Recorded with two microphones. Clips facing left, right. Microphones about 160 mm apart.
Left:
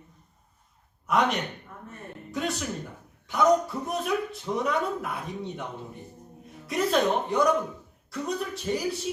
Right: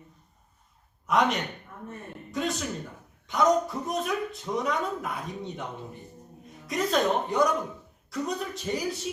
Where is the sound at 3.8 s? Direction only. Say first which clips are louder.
Left 1 dB; 5° left (ahead or behind).